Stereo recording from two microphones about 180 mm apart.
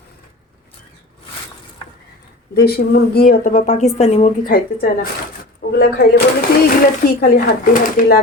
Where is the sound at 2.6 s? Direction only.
60° left (ahead or behind); by 4.3 s 40° left (ahead or behind).